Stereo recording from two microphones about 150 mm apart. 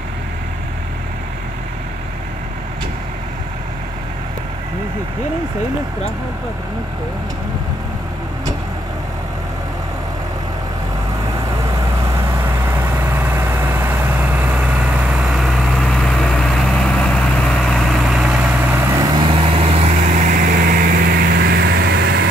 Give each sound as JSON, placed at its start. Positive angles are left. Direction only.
{"t": 12.4, "sound": "vehicle", "side_deg": -15}
{"t": 19.1, "sound": "vehicle", "side_deg": -35}
{"t": 20.2, "sound": "vehicle", "side_deg": -65}